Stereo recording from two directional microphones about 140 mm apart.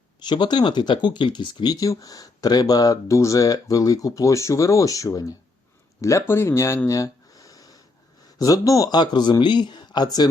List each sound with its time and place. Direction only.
0.2 s speech: 30° left (ahead or behind)